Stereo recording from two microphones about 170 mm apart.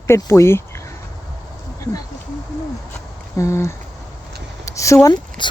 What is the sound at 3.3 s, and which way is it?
Speech, 15° left (ahead or behind).